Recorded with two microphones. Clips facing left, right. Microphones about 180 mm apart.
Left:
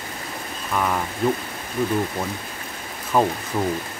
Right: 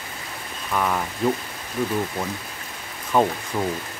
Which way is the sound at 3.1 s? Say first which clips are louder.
Even; centre (ahead or behind).